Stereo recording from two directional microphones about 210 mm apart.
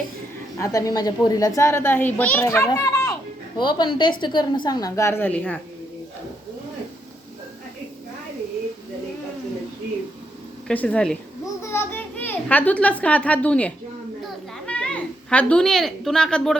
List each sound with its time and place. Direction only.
0.6 s a child's voice: 15° left (ahead or behind)
10.7 s a child's voice: 5° left (ahead or behind)